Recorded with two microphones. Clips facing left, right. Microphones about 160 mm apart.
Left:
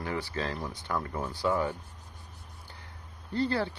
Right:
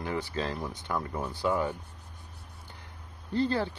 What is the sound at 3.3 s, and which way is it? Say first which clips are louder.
Speech: right 1 dB; 15° right (ahead or behind).